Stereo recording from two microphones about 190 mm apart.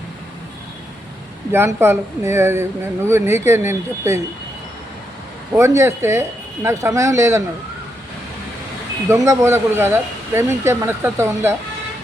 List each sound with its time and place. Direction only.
1.5 s speech: 15° right (ahead or behind)
5.5 s speech: 15° right (ahead or behind)
9.2 s speech: 15° right (ahead or behind)